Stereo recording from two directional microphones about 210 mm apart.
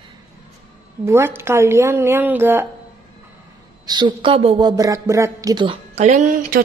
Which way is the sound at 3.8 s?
20° right (ahead or behind).